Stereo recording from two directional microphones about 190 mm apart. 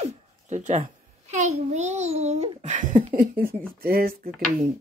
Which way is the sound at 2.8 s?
45° right (ahead or behind).